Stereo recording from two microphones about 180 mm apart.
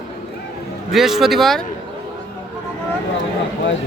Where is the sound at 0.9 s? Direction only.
Centre (ahead or behind).